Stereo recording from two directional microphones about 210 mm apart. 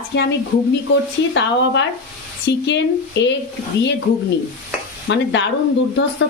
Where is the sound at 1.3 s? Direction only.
60° left (ahead or behind).